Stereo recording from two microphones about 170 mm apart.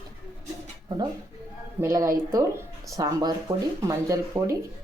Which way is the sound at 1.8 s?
15° right (ahead or behind).